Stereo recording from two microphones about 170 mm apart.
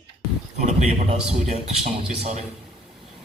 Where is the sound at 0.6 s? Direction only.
40° right (ahead or behind).